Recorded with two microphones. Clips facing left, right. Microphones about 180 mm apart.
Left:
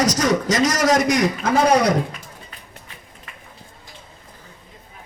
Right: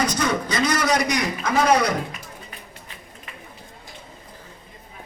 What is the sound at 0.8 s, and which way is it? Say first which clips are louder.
Speech: left 6 dB; 45° left (ahead or behind).